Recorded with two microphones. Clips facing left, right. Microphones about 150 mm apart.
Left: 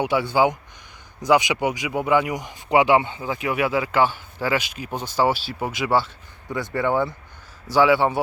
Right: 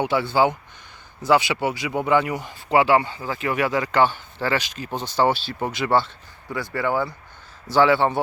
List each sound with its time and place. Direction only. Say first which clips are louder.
0.0 s speech: even; 10° left (ahead or behind)
6.5 s speech: left 2 dB; 25° left (ahead or behind)
7.7 s speech: even; 10° left (ahead or behind)